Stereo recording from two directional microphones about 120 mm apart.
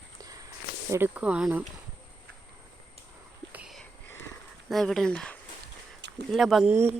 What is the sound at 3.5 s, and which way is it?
Whispering, 10° right (ahead or behind).